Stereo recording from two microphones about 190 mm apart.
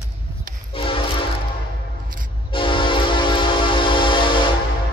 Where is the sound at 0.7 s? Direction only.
30° left (ahead or behind).